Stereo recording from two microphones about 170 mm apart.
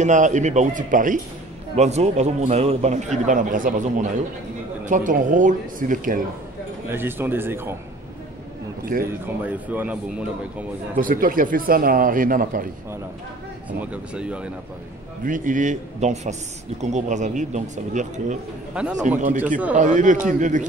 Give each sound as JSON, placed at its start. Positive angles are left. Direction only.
{"t": 0.0, "sound": "a man's voice", "side_deg": -45}
{"t": 1.8, "sound": "a man's voice", "side_deg": -40}
{"t": 6.9, "sound": "speech", "side_deg": -15}
{"t": 9.0, "sound": "speech", "side_deg": -10}
{"t": 11.0, "sound": "speech", "side_deg": -55}
{"t": 13.7, "sound": "speech", "side_deg": -5}
{"t": 15.2, "sound": "a man's voice", "side_deg": -50}